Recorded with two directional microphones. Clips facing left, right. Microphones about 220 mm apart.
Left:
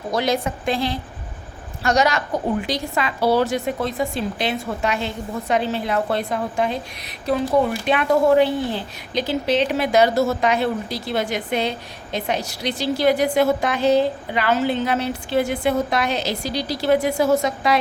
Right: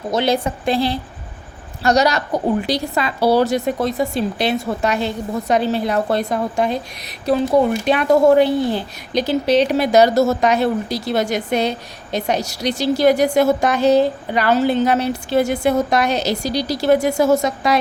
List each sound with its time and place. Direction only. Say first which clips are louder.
0.1 s a woman's voice: right 3 dB; 30° right (ahead or behind)